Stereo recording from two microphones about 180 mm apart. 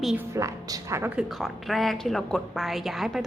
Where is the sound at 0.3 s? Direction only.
15° right (ahead or behind).